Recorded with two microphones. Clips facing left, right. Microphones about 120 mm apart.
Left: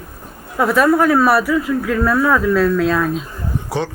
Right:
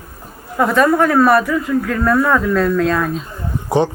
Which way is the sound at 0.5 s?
5° left (ahead or behind).